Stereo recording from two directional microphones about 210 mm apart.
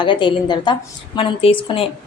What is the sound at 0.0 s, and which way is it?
A woman's voice, 20° left (ahead or behind).